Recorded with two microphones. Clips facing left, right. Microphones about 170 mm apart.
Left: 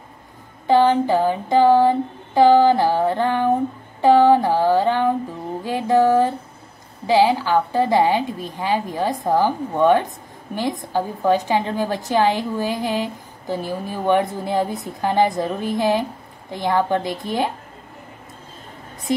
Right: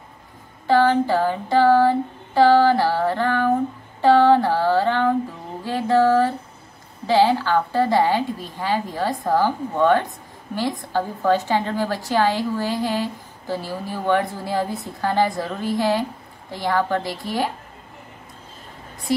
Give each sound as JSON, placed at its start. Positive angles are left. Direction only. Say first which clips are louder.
{"t": 0.7, "sound": "a woman's voice", "louder": "left 2 dB", "side_deg": 20}
{"t": 19.1, "sound": "speech", "louder": "even", "side_deg": 20}